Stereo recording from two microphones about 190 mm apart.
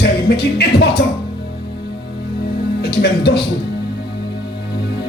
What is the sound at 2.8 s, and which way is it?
Speech, 55° left (ahead or behind).